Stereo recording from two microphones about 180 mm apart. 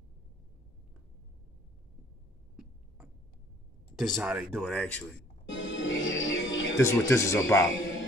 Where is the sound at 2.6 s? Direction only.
10° right (ahead or behind).